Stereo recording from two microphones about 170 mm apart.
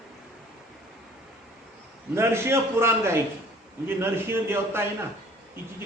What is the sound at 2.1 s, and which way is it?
A man's voice, 15° right (ahead or behind).